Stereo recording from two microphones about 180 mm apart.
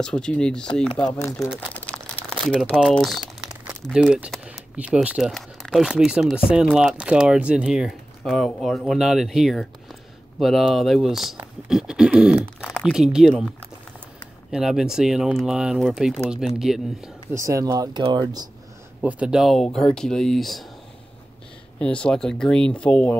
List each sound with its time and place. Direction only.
0.0 s speech: 5° left (ahead or behind)
1.2 s speech: 15° left (ahead or behind)
1.9 s crumpling: 5° left (ahead or behind)
2.7 s speech: centre (ahead or behind)
17.3 s speech: 15° right (ahead or behind)
18.9 s speech: 5° right (ahead or behind)
21.7 s speech: 5° left (ahead or behind)